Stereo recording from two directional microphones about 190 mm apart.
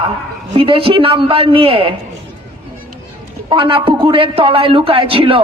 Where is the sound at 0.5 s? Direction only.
30° right (ahead or behind).